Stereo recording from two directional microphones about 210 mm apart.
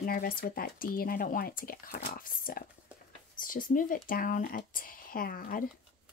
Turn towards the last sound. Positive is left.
turn(degrees=40)  # may be behind; listen again after turning